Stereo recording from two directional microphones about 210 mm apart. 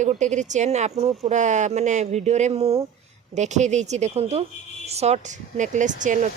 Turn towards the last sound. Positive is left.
turn(degrees=-35)  # may be behind; listen again after turning